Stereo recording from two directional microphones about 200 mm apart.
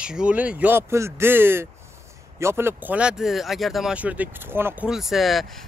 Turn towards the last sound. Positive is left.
turn(degrees=0)  # may be behind; listen again after turning